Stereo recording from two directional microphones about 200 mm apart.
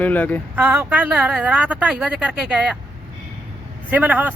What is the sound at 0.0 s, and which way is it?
Speech, 10° left (ahead or behind).